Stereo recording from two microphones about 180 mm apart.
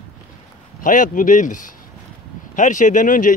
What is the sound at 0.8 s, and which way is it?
Speech, 45° left (ahead or behind).